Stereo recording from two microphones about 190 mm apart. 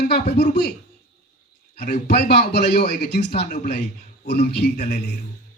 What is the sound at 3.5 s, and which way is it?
Speech, 45° left (ahead or behind).